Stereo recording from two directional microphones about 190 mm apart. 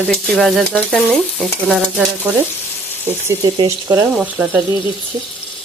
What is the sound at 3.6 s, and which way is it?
Speech, 15° right (ahead or behind).